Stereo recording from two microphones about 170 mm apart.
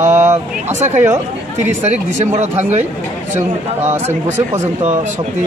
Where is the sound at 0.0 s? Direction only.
15° right (ahead or behind).